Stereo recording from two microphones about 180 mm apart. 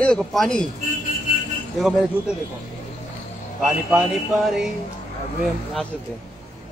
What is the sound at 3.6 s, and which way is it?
Speech, 5° right (ahead or behind).